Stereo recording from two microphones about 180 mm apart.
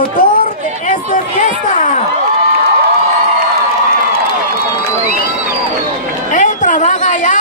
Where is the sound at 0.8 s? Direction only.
45° left (ahead or behind).